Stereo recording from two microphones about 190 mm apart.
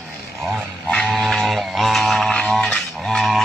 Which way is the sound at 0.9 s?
5° left (ahead or behind).